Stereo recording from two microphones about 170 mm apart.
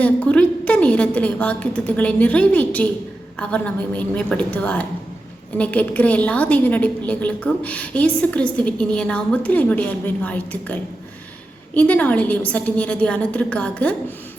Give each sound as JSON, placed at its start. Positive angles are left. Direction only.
{"t": 0.0, "sound": "a woman's voice", "side_deg": 5}